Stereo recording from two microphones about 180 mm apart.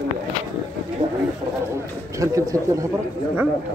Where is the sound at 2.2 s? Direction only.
15° right (ahead or behind).